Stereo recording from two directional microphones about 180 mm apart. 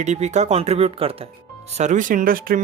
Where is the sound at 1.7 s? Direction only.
40° right (ahead or behind).